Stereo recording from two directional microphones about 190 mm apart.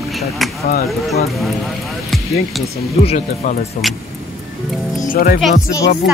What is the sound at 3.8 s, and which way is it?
Speech, centre (ahead or behind).